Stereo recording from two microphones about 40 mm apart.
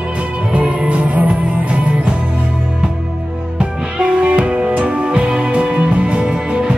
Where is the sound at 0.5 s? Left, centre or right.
Right.